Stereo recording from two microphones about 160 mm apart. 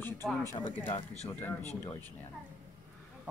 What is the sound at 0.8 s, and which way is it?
Speech, 35° left (ahead or behind).